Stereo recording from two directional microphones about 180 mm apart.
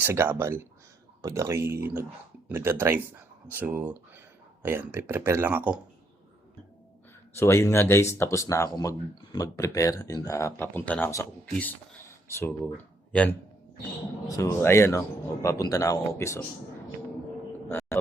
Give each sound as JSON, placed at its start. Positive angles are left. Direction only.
{"t": 0.0, "sound": "speech", "side_deg": -15}
{"t": 7.3, "sound": "speech", "side_deg": 15}
{"t": 12.3, "sound": "speech", "side_deg": 10}
{"t": 17.7, "sound": "a sound", "side_deg": 15}